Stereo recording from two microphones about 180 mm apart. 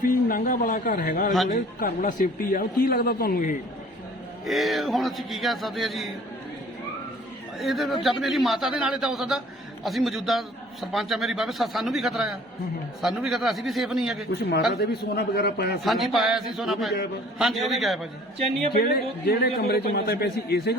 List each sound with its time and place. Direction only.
0.0 s a man's voice: 50° left (ahead or behind)
4.4 s a man's voice: centre (ahead or behind)
7.6 s a man's voice: centre (ahead or behind)
14.7 s a man's voice: 65° left (ahead or behind)
15.8 s a man's voice: centre (ahead or behind)
18.8 s a man's voice: 60° left (ahead or behind)